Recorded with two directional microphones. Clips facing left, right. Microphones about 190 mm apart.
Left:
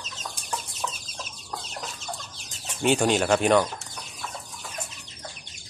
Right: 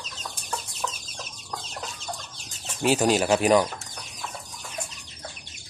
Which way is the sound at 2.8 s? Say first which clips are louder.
Even; 5° right (ahead or behind).